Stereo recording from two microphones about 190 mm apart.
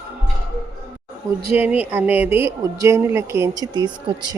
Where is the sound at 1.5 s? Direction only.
10° right (ahead or behind).